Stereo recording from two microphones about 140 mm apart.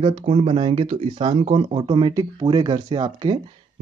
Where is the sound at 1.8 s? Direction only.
35° right (ahead or behind).